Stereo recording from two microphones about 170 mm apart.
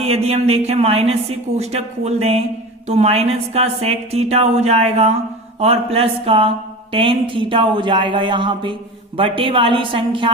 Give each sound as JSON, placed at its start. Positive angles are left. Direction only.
{"t": 0.0, "sound": "a woman's voice", "side_deg": -35}